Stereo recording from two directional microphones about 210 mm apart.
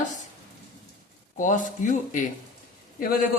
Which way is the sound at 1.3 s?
35° left (ahead or behind).